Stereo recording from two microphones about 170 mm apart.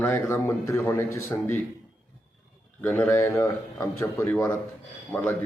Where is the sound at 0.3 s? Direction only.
15° left (ahead or behind).